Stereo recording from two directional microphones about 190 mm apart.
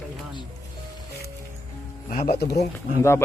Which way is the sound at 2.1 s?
55° left (ahead or behind).